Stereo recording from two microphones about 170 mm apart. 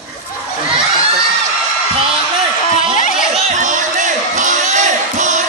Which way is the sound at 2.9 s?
50° left (ahead or behind).